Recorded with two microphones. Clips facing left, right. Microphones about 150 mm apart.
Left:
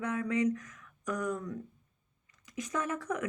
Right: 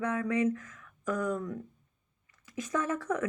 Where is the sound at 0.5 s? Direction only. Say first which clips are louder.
Even; 20° left (ahead or behind).